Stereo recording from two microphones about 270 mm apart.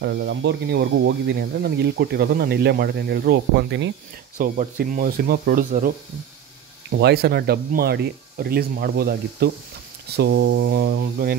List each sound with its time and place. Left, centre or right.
0.0 s speech: right